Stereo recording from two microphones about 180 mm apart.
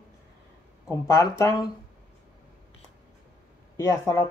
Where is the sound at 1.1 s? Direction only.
15° left (ahead or behind).